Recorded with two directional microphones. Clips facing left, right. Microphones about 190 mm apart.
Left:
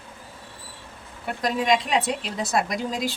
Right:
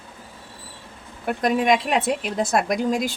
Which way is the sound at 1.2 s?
55° right (ahead or behind).